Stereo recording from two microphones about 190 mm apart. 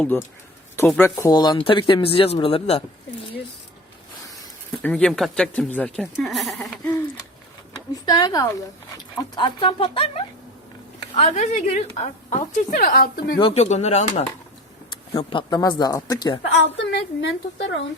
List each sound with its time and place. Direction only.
0.0 s speech: 10° left (ahead or behind); by 2.8 s 30° left (ahead or behind)
4.8 s speech: 5° left (ahead or behind)
7.9 s a woman's voice: 20° left (ahead or behind); by 13.3 s 50° left (ahead or behind)
13.3 s a woman's voice: 30° left (ahead or behind)
15.1 s speech: 25° left (ahead or behind)
16.7 s a woman's voice: 65° left (ahead or behind)